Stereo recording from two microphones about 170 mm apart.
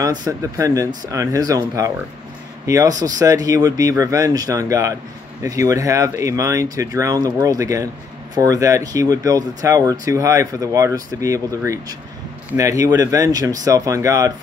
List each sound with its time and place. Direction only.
0.0 s speech: 20° right (ahead or behind)